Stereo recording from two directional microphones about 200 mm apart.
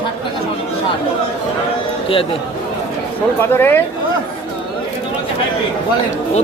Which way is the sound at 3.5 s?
10° left (ahead or behind).